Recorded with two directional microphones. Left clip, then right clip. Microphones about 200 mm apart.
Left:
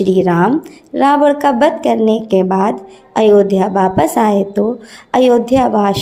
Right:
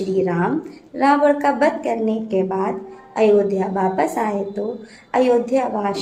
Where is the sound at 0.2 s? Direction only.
40° left (ahead or behind).